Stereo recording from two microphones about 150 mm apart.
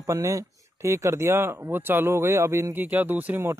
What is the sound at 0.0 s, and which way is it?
Speech, 20° right (ahead or behind).